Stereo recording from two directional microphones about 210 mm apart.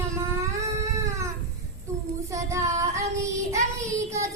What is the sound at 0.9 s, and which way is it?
Cat, 15° right (ahead or behind).